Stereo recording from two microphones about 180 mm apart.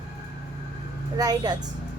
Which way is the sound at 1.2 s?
20° right (ahead or behind).